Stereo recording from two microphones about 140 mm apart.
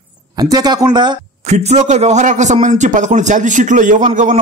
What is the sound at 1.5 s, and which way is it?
Speech, 50° right (ahead or behind).